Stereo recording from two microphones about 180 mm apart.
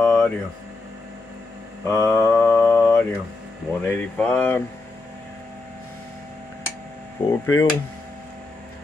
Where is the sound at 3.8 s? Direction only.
10° left (ahead or behind).